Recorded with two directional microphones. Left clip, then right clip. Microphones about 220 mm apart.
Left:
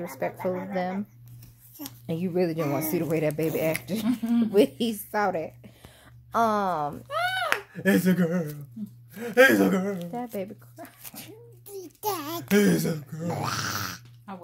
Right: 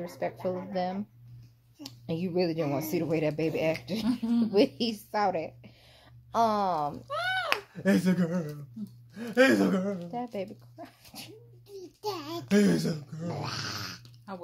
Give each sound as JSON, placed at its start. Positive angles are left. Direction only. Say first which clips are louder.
{"t": 0.0, "sound": "a woman's voice", "louder": "left 3 dB", "side_deg": 5}
{"t": 7.1, "sound": "a sound", "louder": "left 5 dB", "side_deg": 25}
{"t": 7.7, "sound": "speech", "louder": "left 4 dB", "side_deg": 25}
{"t": 10.1, "sound": "zipper", "louder": "left 2 dB", "side_deg": 0}
{"t": 11.7, "sound": "a sound", "louder": "left 5 dB", "side_deg": 55}
{"t": 12.5, "sound": "speech", "louder": "left 3 dB", "side_deg": 25}
{"t": 13.3, "sound": "speech", "louder": "left 6 dB", "side_deg": 50}